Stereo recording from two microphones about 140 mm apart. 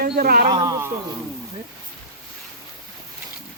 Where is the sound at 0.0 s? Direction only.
90° right.